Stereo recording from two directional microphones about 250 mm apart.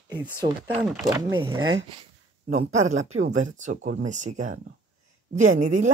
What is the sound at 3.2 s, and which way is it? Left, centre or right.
Speech, right.